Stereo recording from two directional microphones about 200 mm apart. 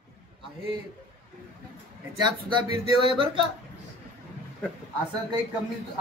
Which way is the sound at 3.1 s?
25° right (ahead or behind).